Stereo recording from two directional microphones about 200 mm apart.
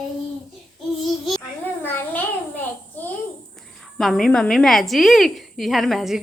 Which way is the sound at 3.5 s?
Centre (ahead or behind).